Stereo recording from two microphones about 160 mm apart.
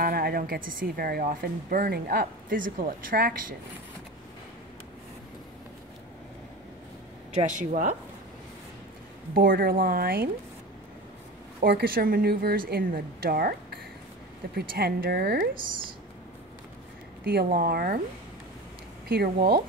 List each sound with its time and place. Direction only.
0.0 s speech: 70° right (ahead or behind)
7.4 s speech: 50° right (ahead or behind)
9.3 s a woman's voice: 65° right (ahead or behind)
11.6 s a woman's voice: 65° right (ahead or behind)
17.2 s a woman's voice: 75° right (ahead or behind)
19.0 s a woman's voice: 75° right (ahead or behind)